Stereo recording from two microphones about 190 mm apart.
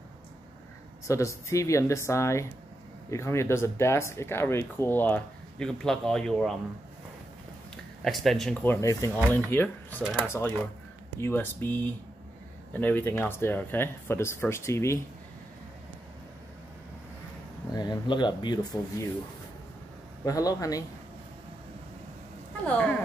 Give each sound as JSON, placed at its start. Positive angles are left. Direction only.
{"t": 1.0, "sound": "speech", "side_deg": 15}
{"t": 7.7, "sound": "speech", "side_deg": 0}
{"t": 10.0, "sound": "speech", "side_deg": -5}
{"t": 11.1, "sound": "speech", "side_deg": 10}
{"t": 17.7, "sound": "speech", "side_deg": 25}
{"t": 20.2, "sound": "speech", "side_deg": 20}
{"t": 22.7, "sound": "speech", "side_deg": 5}